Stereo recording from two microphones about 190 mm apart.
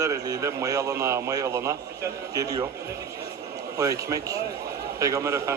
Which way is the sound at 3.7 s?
15° right (ahead or behind).